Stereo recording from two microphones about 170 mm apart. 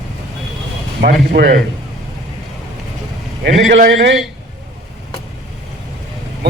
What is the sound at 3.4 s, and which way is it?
Speech, 90° right.